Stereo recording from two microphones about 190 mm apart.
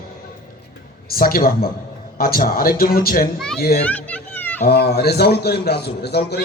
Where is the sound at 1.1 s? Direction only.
50° left (ahead or behind).